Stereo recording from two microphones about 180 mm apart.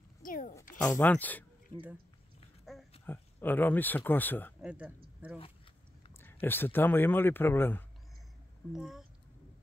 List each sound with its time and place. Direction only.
0.2 s a sound: 50° left (ahead or behind)
0.8 s speech: 10° left (ahead or behind)
2.6 s a sound: centre (ahead or behind)
3.1 s speech: 10° left (ahead or behind)
4.6 s speech: 5° right (ahead or behind)
6.2 s speech: 10° left (ahead or behind)
8.7 s speech: 5° right (ahead or behind)